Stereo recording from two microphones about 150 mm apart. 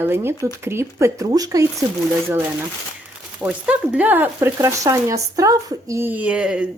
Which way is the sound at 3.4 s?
10° right (ahead or behind).